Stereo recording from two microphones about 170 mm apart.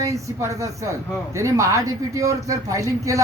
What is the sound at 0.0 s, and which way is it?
A man's voice, 20° right (ahead or behind).